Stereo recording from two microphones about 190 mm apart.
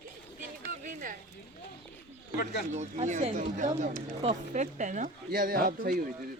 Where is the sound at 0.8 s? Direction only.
45° right (ahead or behind).